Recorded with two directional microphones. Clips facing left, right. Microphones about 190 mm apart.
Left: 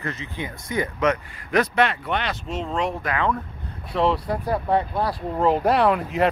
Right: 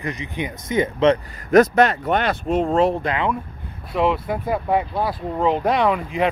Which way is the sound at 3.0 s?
20° right (ahead or behind).